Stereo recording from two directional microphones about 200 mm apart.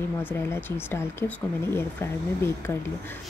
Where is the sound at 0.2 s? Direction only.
10° left (ahead or behind).